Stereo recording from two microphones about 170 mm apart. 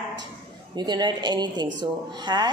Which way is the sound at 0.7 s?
25° right (ahead or behind).